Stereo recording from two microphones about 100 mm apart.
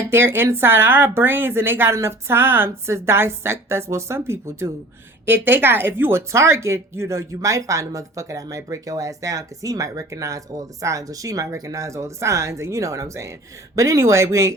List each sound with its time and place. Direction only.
0.1 s speech: 25° right (ahead or behind)